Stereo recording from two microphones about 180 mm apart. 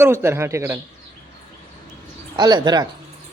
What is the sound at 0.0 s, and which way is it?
Speech, 15° right (ahead or behind).